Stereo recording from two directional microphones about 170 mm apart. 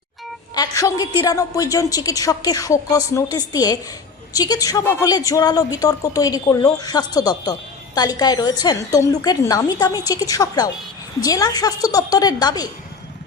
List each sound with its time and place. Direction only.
0.5 s a woman's voice: 20° left (ahead or behind)